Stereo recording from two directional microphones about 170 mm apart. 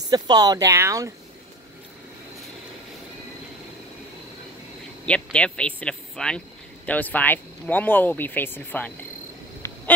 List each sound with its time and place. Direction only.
0.0 s speech: 25° right (ahead or behind)
5.0 s speech: 5° left (ahead or behind)